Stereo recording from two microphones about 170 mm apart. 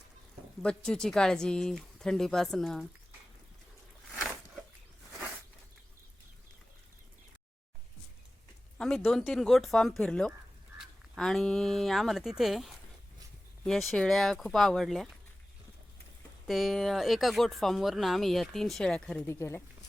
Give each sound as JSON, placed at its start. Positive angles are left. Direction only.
{"t": 0.6, "sound": "speech", "side_deg": 5}
{"t": 8.8, "sound": "speech", "side_deg": 0}
{"t": 16.5, "sound": "speech", "side_deg": 0}
{"t": 19.3, "sound": "speech", "side_deg": 15}